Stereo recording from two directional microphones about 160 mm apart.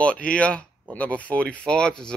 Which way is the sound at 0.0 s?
5° left (ahead or behind).